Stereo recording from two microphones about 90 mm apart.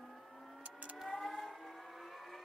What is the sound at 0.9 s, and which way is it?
Civil defense siren, centre (ahead or behind).